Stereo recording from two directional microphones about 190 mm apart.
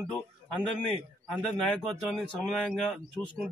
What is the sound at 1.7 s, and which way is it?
A man's voice, centre (ahead or behind).